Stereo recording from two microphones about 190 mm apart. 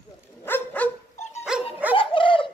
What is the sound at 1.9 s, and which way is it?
Bird, 25° left (ahead or behind).